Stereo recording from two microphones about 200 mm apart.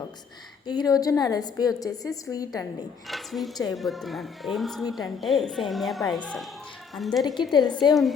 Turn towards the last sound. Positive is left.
turn(degrees=20)  # may be behind; listen again after turning